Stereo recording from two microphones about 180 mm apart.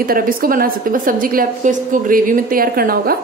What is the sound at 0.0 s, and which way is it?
A woman's voice, 55° right (ahead or behind).